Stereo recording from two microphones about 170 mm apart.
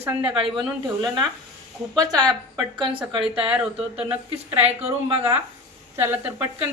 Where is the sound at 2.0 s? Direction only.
25° right (ahead or behind).